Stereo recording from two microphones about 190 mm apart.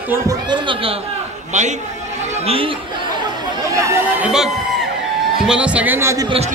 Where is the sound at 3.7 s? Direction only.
15° right (ahead or behind).